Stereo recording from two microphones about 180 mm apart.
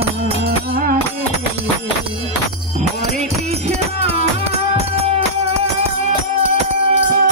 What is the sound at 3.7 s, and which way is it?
Music, 35° right (ahead or behind).